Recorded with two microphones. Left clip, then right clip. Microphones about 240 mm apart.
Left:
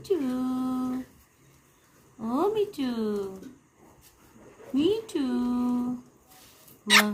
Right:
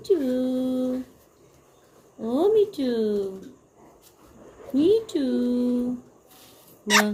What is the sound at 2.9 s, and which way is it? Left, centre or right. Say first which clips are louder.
Speech: right 6 dB; left.